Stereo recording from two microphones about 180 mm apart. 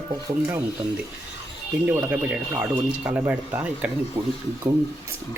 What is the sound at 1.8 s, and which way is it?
Speech, 5° right (ahead or behind).